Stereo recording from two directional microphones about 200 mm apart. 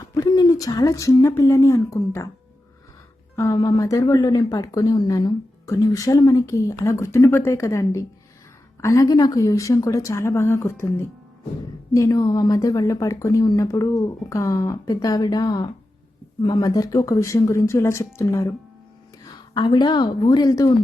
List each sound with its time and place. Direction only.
0.1 s speech: 20° left (ahead or behind)
3.3 s a woman's voice: 15° left (ahead or behind)